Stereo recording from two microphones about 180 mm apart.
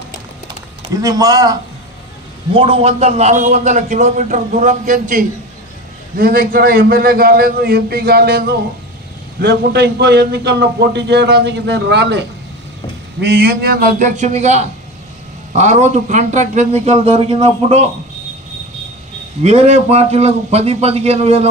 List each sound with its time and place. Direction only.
0.9 s speech: 20° right (ahead or behind)
2.5 s a man's voice: 30° right (ahead or behind)
19.4 s a man's voice: 35° right (ahead or behind)